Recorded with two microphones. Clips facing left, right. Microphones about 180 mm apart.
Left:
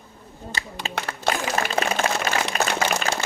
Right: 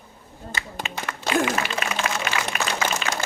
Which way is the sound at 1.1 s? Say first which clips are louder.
Right 3 dB; 40° left (ahead or behind).